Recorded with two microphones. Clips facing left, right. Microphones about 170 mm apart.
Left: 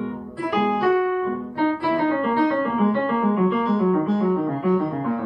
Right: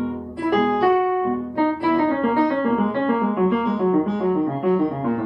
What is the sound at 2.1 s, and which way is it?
Music, 20° right (ahead or behind).